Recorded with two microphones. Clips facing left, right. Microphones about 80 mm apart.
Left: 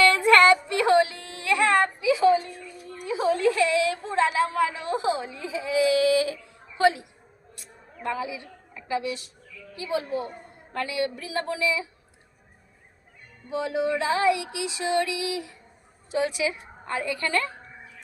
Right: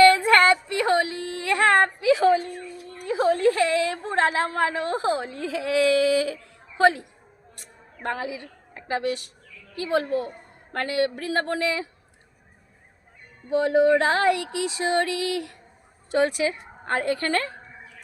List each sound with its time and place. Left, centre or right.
0.1 s a sound: right
3.0 s a woman's voice: right
7.5 s a sound: right
8.3 s a woman's voice: right
13.5 s music: right
16.1 s music: right